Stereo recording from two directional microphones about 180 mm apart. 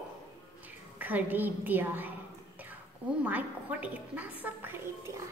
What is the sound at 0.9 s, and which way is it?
A woman's voice, 10° right (ahead or behind).